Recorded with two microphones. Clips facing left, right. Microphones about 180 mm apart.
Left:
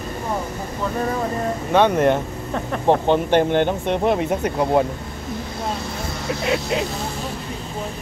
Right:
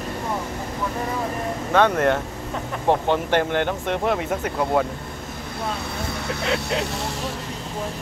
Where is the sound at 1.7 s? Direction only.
20° left (ahead or behind).